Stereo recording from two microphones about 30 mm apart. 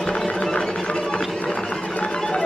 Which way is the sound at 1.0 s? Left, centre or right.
Left.